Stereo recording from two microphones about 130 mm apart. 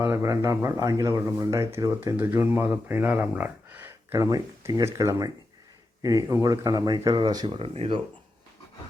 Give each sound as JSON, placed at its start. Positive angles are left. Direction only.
{"t": 0.0, "sound": "speech", "side_deg": -20}